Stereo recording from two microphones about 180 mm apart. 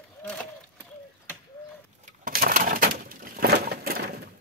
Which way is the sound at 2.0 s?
55° right (ahead or behind).